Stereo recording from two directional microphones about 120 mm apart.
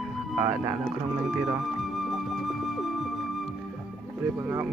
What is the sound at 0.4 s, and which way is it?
Speech, 30° right (ahead or behind).